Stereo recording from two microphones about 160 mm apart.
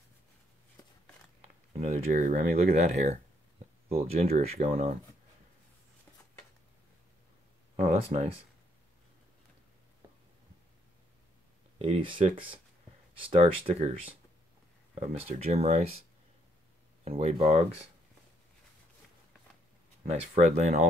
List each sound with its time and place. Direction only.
1.9 s speech: 60° right (ahead or behind)
2.7 s speech: 45° right (ahead or behind)
7.7 s speech: 45° right (ahead or behind)
11.8 s speech: 35° right (ahead or behind)
15.2 s speech: 40° right (ahead or behind)
17.0 s speech: 40° right (ahead or behind)
20.1 s speech: 45° right (ahead or behind)